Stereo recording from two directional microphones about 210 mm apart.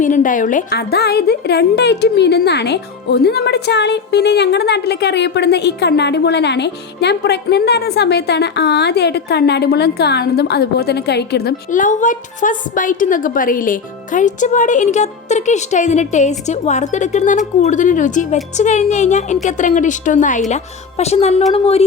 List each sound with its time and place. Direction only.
0.0 s a woman's voice: 40° left (ahead or behind)